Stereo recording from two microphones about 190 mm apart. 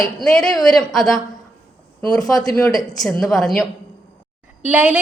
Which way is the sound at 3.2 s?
Centre (ahead or behind).